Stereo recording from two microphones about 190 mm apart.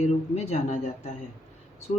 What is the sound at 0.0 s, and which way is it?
Speech, 35° left (ahead or behind).